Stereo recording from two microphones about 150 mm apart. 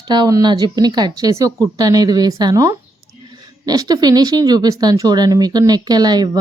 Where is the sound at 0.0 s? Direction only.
30° right (ahead or behind).